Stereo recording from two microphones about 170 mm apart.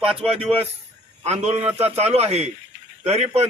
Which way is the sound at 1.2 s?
40° right (ahead or behind).